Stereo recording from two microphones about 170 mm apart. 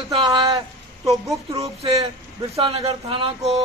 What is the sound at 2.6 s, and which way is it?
Speech, 35° right (ahead or behind).